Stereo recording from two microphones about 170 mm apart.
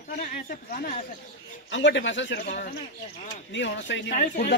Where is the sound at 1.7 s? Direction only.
90° left.